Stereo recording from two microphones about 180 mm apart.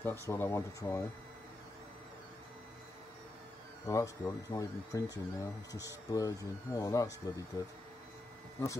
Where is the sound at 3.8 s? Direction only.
20° left (ahead or behind).